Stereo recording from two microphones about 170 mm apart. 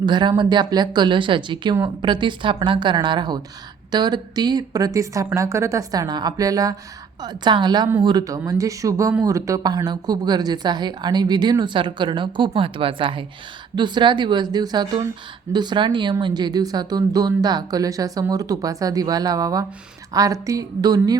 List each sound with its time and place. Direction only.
0.0 s speech: 25° right (ahead or behind)